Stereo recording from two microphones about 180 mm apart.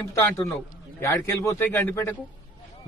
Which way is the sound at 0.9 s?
15° left (ahead or behind).